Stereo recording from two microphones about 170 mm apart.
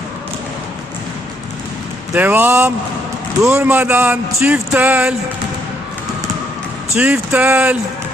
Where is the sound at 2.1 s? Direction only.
10° right (ahead or behind).